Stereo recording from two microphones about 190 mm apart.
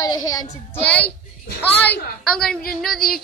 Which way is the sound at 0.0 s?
20° left (ahead or behind).